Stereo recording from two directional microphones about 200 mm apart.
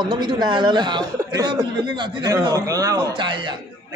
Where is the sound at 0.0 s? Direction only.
20° right (ahead or behind).